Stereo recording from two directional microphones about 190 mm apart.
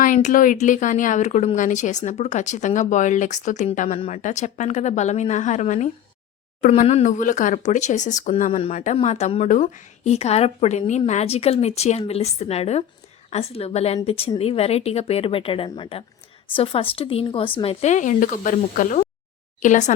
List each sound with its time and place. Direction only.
0.0 s a woman's voice: 45° left (ahead or behind)